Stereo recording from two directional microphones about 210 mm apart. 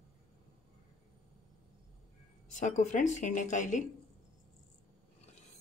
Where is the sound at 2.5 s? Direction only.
35° left (ahead or behind).